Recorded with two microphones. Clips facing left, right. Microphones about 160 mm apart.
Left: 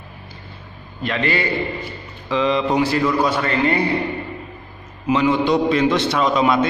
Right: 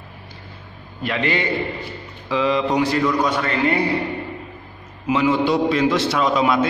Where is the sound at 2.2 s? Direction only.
5° right (ahead or behind).